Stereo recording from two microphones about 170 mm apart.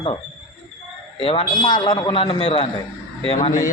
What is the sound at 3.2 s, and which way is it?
Speech, 40° left (ahead or behind).